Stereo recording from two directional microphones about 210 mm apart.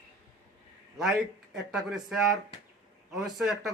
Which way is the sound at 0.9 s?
Centre (ahead or behind).